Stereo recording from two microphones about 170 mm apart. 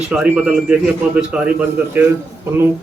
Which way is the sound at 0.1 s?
5° right (ahead or behind).